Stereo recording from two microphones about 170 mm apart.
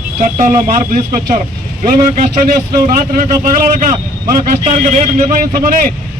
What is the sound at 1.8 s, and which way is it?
A man's voice, 55° right (ahead or behind).